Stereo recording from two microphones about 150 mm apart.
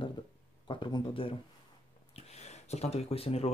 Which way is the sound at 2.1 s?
45° left (ahead or behind).